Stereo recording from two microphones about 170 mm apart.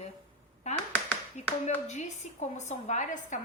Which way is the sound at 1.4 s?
45° left (ahead or behind).